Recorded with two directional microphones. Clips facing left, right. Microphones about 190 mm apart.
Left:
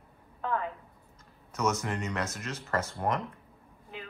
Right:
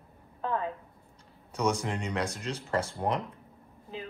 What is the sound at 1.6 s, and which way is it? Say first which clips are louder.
Speech: right 1 dB; 15° right (ahead or behind).